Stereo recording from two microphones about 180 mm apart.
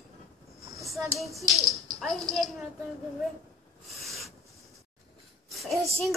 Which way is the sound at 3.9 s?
Centre (ahead or behind).